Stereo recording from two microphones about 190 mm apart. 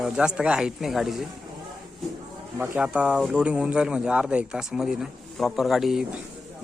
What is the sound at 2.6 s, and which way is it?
A man's voice, 10° right (ahead or behind).